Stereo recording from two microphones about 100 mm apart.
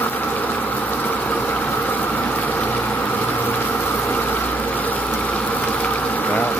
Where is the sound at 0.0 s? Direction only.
20° left (ahead or behind).